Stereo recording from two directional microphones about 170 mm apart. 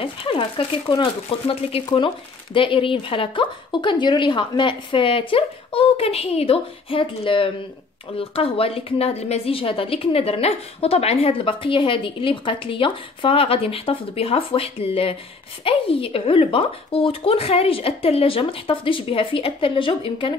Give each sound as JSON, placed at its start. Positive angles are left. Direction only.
{"t": 0.0, "sound": "a woman's voice", "side_deg": 30}